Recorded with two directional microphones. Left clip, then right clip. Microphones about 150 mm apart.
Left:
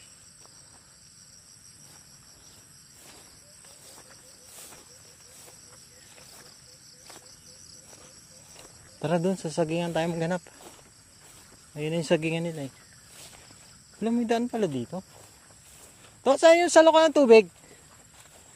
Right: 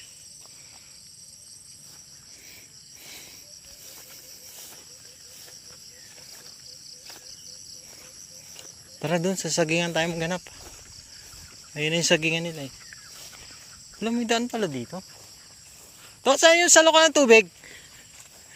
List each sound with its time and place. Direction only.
8.5 s speech: centre (ahead or behind)
10.2 s speech: 15° left (ahead or behind)
11.7 s speech: centre (ahead or behind); by 12.7 s 15° left (ahead or behind)
14.0 s speech: 15° left (ahead or behind)
16.2 s speech: 10° left (ahead or behind)